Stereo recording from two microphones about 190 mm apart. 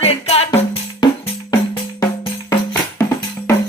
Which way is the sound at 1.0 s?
20° left (ahead or behind).